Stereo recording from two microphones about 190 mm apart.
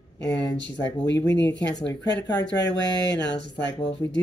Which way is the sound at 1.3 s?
70° left (ahead or behind).